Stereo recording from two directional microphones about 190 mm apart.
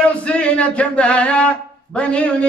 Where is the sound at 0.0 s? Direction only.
5° left (ahead or behind).